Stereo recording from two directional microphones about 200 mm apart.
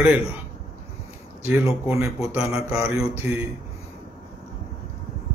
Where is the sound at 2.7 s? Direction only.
10° right (ahead or behind).